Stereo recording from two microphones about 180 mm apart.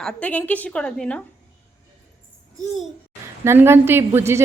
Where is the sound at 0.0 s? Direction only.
5° left (ahead or behind).